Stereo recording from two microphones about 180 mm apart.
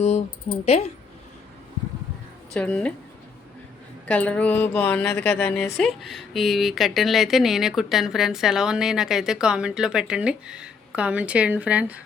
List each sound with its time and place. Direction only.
0.6 s speech: 35° left (ahead or behind)
2.5 s a woman's voice: 5° left (ahead or behind)
4.1 s a woman's voice: 5° left (ahead or behind); by 12.0 s 10° right (ahead or behind)